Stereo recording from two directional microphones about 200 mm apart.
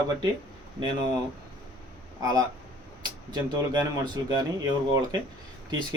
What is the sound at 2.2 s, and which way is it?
Speech, 15° right (ahead or behind).